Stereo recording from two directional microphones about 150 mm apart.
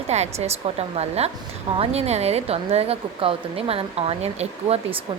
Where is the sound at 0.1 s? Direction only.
45° right (ahead or behind).